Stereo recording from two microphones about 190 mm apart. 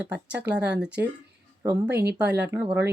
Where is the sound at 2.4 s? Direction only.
10° right (ahead or behind).